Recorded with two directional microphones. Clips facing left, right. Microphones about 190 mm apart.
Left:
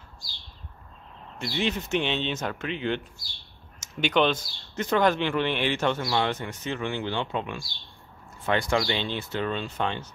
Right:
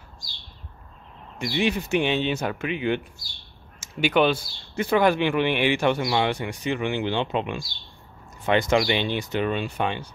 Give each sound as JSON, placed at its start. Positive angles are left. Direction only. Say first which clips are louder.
{"t": 1.4, "sound": "speech", "louder": "right 4 dB", "side_deg": -10}